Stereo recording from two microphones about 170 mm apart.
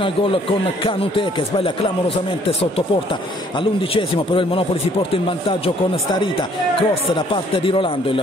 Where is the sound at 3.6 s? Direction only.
30° left (ahead or behind).